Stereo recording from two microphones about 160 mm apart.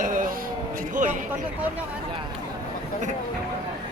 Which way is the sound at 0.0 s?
55° right (ahead or behind).